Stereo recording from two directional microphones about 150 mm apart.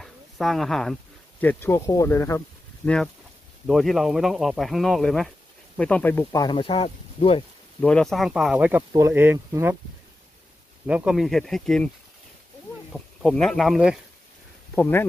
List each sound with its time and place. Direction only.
0.0 s a sound: centre (ahead or behind)
1.4 s speech: 15° left (ahead or behind)
2.8 s speech: 5° left (ahead or behind)
6.4 s speech: 35° left (ahead or behind)
7.8 s speech: 5° left (ahead or behind); by 9.8 s 15° right (ahead or behind)
10.9 s speech: 5° right (ahead or behind)
12.9 s speech: 5° left (ahead or behind)
14.8 s speech: 15° left (ahead or behind)